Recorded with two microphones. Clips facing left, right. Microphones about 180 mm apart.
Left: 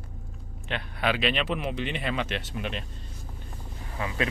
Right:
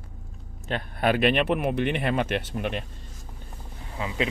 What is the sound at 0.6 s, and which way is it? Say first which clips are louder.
Speech: right 4 dB; 45° right (ahead or behind).